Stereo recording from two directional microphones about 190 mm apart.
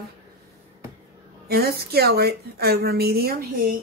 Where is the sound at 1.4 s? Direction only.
55° right (ahead or behind).